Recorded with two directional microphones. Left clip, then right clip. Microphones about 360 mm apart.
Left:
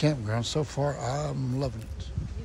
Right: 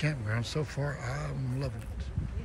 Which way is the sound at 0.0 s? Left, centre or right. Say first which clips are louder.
Left 6 dB; centre.